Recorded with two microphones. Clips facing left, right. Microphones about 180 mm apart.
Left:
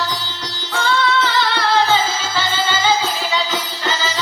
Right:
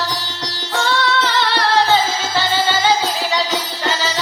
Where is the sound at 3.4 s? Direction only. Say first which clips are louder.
Right 2 dB; 65° right (ahead or behind).